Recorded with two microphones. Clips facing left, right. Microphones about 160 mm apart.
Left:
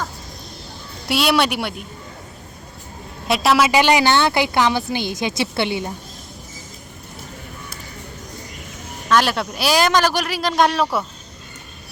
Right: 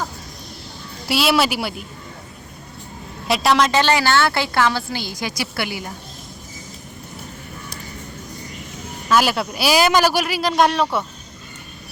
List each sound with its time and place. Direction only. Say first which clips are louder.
1.0 s speech: even; centre (ahead or behind)
3.2 s a woman's voice: left 1 dB; centre (ahead or behind); by 5.9 s 25° left (ahead or behind)
9.0 s speech: even; 5° right (ahead or behind)